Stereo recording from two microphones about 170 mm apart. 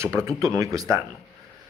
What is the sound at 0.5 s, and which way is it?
Speech, 20° right (ahead or behind).